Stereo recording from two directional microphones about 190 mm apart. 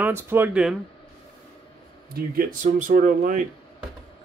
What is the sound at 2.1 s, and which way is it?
Speech, 50° right (ahead or behind).